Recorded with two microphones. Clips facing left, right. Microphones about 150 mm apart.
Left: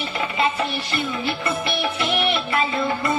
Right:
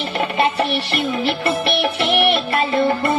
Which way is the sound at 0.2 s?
65° right (ahead or behind).